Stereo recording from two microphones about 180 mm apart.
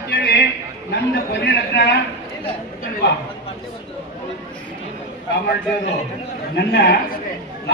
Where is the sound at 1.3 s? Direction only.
70° left (ahead or behind).